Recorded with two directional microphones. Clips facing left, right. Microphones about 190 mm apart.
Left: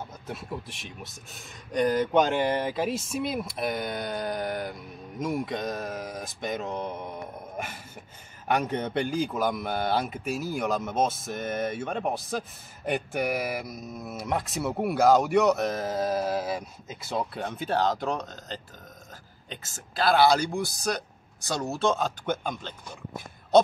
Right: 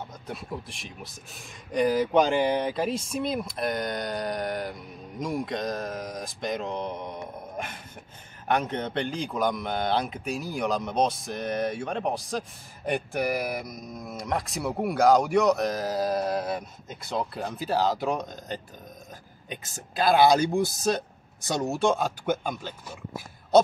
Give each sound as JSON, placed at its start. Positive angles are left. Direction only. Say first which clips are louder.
{"t": 0.3, "sound": "a man's voice", "louder": "even", "side_deg": 0}